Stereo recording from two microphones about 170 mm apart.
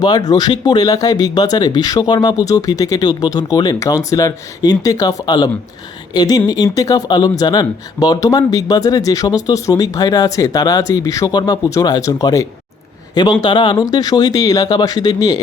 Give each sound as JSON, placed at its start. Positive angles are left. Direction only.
{"t": 0.0, "sound": "speech", "side_deg": 25}